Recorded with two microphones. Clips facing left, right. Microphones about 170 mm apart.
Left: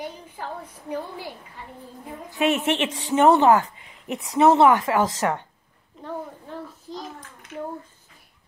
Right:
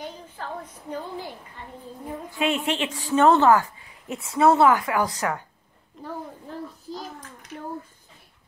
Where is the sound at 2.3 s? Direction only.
20° left (ahead or behind).